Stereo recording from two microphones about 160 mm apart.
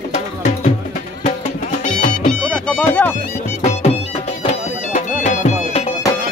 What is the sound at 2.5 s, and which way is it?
Music, 10° left (ahead or behind).